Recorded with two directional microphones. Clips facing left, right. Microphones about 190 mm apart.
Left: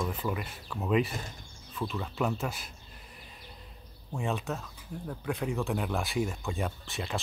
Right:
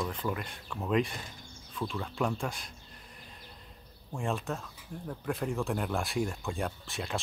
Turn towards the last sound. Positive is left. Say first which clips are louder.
# left 1 dB
turn(degrees=0)  # may be behind; listen again after turning